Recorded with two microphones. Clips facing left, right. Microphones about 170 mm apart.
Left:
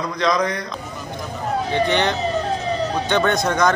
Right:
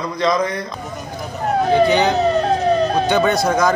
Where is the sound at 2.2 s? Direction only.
60° right (ahead or behind).